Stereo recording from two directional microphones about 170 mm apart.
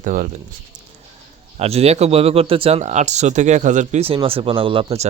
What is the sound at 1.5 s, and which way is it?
Speech, 35° right (ahead or behind).